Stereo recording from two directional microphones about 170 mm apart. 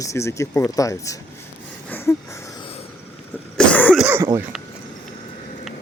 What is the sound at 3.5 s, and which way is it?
Cough, 10° left (ahead or behind).